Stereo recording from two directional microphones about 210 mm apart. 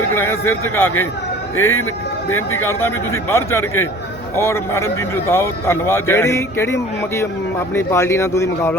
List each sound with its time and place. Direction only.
0.1 s a man's voice: 10° left (ahead or behind)
1.5 s speech: 80° left
2.6 s a man's voice: 10° left (ahead or behind)